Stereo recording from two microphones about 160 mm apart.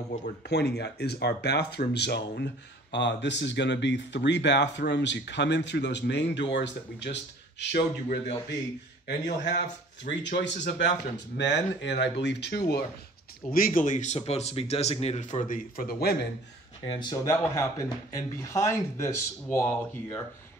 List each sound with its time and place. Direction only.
0.5 s speech: 90° left
13.5 s speech: 60° left (ahead or behind); by 16.2 s 75° left (ahead or behind)
16.8 s speech: 35° left (ahead or behind)
17.1 s a man's voice: 20° left (ahead or behind)